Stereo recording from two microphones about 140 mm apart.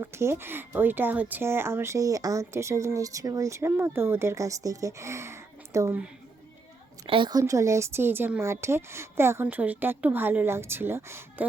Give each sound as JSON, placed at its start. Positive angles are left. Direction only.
{"t": 0.0, "sound": "speech", "side_deg": -20}
{"t": 7.1, "sound": "speech", "side_deg": -35}